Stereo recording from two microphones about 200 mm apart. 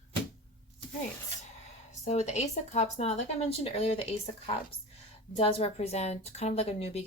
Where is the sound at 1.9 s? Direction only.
35° left (ahead or behind).